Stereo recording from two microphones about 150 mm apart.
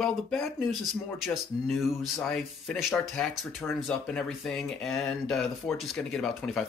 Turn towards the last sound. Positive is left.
turn(degrees=5)  # may be behind; listen again after turning